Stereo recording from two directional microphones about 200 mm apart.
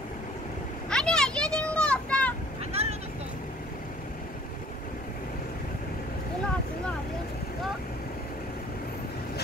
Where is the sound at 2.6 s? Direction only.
30° right (ahead or behind).